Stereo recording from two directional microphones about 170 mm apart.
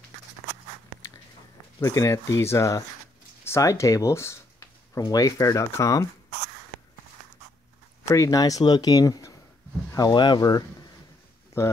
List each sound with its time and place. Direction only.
1.8 s speech: 20° left (ahead or behind)
8.1 s speech: 20° left (ahead or behind)